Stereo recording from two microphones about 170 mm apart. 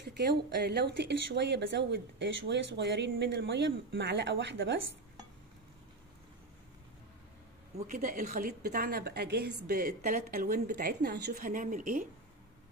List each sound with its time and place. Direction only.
0.0 s speech: 75° right (ahead or behind)
7.8 s speech: 50° right (ahead or behind)
8.5 s a woman's voice: 65° right (ahead or behind)